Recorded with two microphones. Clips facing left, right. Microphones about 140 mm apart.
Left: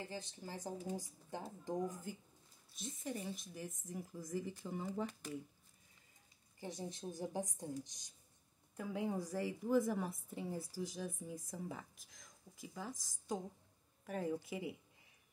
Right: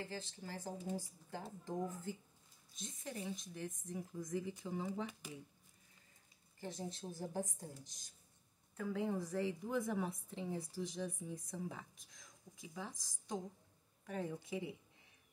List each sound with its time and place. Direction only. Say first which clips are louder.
0.0 s a woman's voice: even; 15° left (ahead or behind)
2.7 s a woman's voice: left 3 dB; 5° left (ahead or behind)
6.6 s a woman's voice: even; 15° left (ahead or behind)